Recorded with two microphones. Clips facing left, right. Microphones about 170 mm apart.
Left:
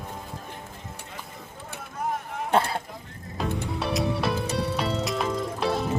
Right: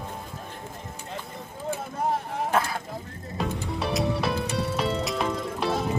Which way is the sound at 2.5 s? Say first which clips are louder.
Left 3 dB; 30° left (ahead or behind).